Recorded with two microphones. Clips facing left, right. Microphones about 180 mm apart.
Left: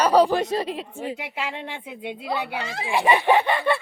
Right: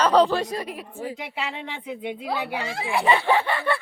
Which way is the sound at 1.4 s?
10° left (ahead or behind).